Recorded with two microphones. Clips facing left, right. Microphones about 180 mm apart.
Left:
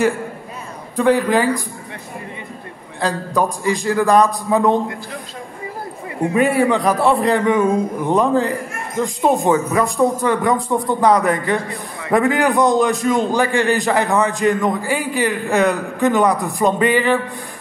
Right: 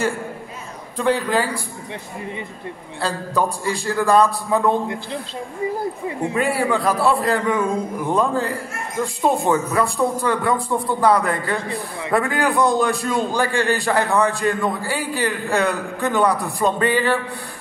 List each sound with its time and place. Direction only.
0.9 s a man's voice: 10° left (ahead or behind)
3.0 s a man's voice: 15° left (ahead or behind)
6.3 s a man's voice: 20° left (ahead or behind)